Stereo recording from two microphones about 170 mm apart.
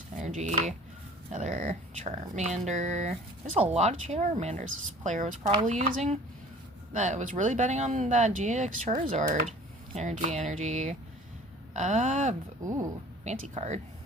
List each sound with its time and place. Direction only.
0.2 s speech: 45° right (ahead or behind)